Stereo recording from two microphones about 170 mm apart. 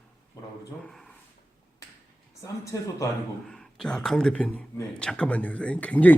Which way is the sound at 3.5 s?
5° left (ahead or behind).